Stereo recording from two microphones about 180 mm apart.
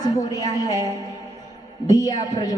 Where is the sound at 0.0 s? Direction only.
20° left (ahead or behind).